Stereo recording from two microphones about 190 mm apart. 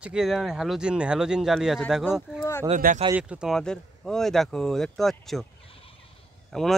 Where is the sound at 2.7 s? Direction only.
45° right (ahead or behind).